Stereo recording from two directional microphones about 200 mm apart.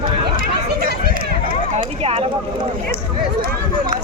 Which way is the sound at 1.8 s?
30° right (ahead or behind).